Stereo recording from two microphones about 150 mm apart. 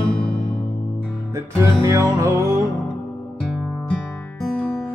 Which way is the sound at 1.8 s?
20° right (ahead or behind).